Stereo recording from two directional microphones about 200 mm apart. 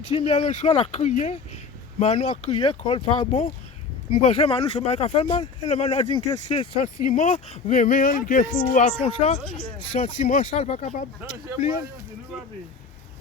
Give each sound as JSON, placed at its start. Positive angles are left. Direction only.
{"t": 0.1, "sound": "speech", "side_deg": 30}